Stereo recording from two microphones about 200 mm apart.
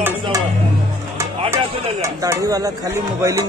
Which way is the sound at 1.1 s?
15° right (ahead or behind).